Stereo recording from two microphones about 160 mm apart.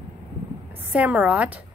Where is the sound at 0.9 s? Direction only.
10° right (ahead or behind).